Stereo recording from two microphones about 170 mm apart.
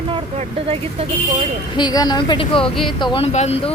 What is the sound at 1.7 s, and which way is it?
Speech, 25° left (ahead or behind).